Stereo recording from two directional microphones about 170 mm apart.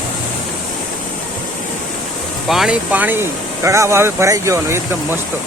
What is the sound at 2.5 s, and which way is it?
Speech, 5° right (ahead or behind).